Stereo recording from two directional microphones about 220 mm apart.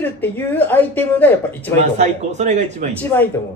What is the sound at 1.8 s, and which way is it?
A man's voice, 30° right (ahead or behind).